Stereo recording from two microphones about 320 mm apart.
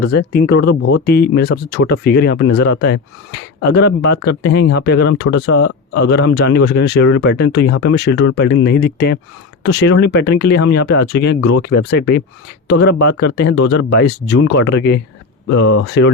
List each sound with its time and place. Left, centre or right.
0.0 s speech: left
5.5 s speech: left
5.9 s speech: left